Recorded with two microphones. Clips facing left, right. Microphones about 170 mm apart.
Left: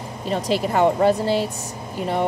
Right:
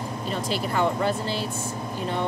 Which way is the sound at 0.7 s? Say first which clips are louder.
Left 7 dB; 40° left (ahead or behind).